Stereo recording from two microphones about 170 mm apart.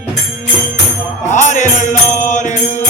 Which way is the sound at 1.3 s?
45° left (ahead or behind).